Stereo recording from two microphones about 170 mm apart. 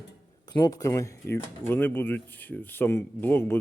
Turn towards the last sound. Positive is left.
turn(degrees=10)  # may be behind; listen again after turning